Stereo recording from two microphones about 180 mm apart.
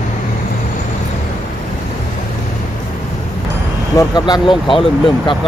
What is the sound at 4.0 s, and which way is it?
Speech, 20° left (ahead or behind).